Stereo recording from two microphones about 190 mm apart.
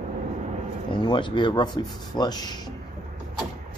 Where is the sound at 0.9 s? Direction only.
25° left (ahead or behind).